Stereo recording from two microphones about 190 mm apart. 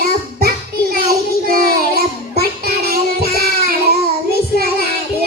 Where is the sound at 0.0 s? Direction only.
50° right (ahead or behind).